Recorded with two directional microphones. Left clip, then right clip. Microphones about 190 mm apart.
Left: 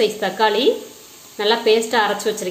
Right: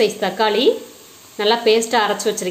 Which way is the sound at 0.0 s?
15° right (ahead or behind).